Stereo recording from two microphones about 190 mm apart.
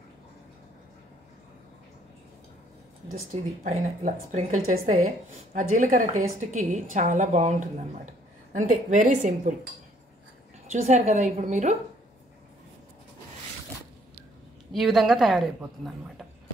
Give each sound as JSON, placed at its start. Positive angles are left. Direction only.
{"t": 3.6, "sound": "a woman's voice", "side_deg": -40}
{"t": 10.7, "sound": "speech", "side_deg": -40}
{"t": 14.7, "sound": "a woman's voice", "side_deg": 0}